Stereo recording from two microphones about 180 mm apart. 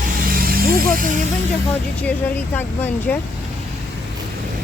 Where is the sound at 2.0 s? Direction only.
10° left (ahead or behind).